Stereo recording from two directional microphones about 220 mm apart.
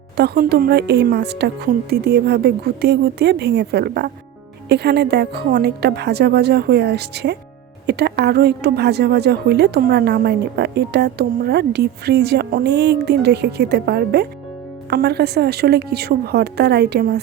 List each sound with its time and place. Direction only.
0.2 s a woman's voice: 45° right (ahead or behind)